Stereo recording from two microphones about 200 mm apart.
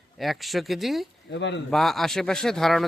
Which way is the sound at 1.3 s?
60° left (ahead or behind).